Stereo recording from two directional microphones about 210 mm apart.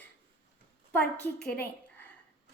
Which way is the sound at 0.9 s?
5° left (ahead or behind).